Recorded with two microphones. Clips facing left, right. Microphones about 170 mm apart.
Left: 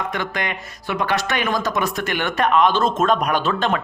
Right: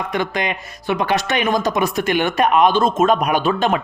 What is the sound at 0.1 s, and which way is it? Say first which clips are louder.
Speech: right 4 dB; 15° right (ahead or behind).